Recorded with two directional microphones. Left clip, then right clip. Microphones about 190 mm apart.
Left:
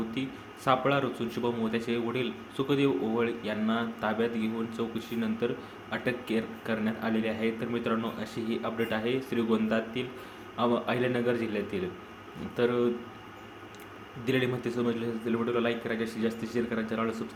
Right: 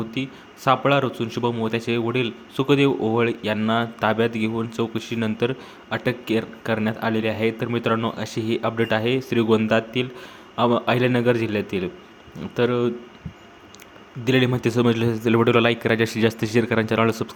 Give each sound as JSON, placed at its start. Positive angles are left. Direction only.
{"t": 0.1, "sound": "a man's voice", "side_deg": -30}
{"t": 14.3, "sound": "a man's voice", "side_deg": -35}